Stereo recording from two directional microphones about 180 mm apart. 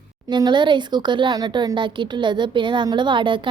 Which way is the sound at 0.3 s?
25° right (ahead or behind).